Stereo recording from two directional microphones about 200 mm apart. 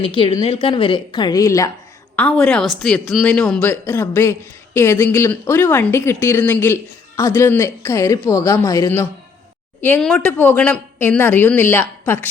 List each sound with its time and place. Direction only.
0.0 s a woman's voice: 25° left (ahead or behind)
2.1 s a woman's voice: 5° left (ahead or behind)